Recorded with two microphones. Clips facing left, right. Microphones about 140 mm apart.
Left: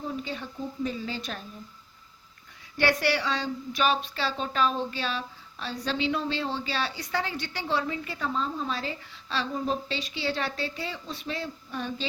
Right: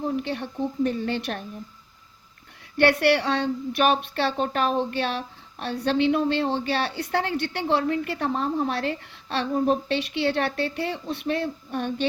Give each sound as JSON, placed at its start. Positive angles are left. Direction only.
{"t": 0.2, "sound": "a woman's voice", "side_deg": -65}
{"t": 2.7, "sound": "a woman's voice", "side_deg": -60}